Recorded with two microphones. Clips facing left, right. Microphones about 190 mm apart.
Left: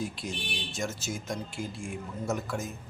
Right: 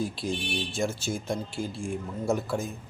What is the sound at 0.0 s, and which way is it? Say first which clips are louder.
Speech: right 5 dB; 30° right (ahead or behind).